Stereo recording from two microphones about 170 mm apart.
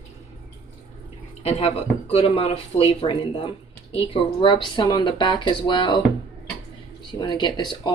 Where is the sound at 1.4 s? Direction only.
35° left (ahead or behind).